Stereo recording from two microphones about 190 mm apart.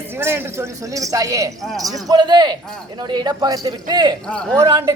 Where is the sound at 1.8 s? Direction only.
20° right (ahead or behind).